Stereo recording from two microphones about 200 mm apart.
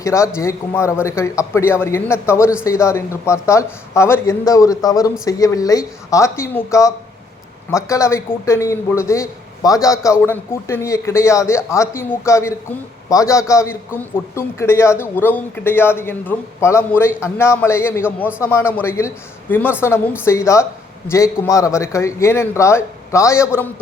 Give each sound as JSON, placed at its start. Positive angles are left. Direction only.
{"t": 0.0, "sound": "a man's voice", "side_deg": 15}